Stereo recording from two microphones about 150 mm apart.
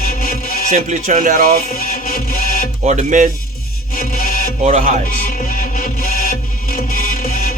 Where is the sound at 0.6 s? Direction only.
50° right (ahead or behind).